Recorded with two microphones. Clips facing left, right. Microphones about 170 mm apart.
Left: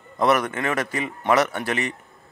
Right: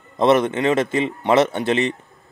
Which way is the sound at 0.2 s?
25° right (ahead or behind).